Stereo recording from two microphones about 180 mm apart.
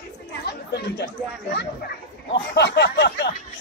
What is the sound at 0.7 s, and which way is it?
Speech, 70° left (ahead or behind).